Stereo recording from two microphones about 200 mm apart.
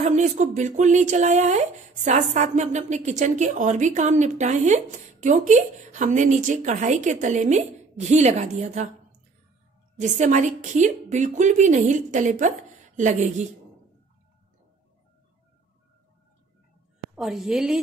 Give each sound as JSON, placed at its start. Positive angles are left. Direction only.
{"t": 0.0, "sound": "a woman's voice", "side_deg": -35}
{"t": 9.9, "sound": "a woman's voice", "side_deg": -35}
{"t": 17.1, "sound": "a woman's voice", "side_deg": 0}